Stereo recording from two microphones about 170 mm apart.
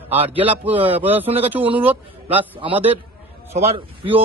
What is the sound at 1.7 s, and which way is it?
Speech, 10° right (ahead or behind).